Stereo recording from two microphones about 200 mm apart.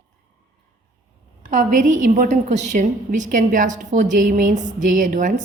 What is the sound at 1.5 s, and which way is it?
A woman's voice, 40° right (ahead or behind).